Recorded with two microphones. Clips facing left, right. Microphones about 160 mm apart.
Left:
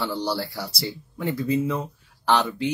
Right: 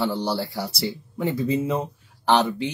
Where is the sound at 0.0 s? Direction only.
20° right (ahead or behind).